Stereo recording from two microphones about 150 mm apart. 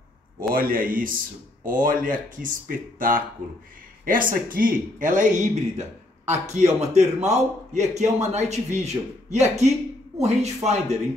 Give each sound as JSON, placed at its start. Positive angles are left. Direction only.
{"t": 0.4, "sound": "speech", "side_deg": -75}